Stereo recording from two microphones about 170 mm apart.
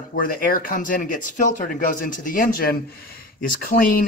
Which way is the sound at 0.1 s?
55° left (ahead or behind).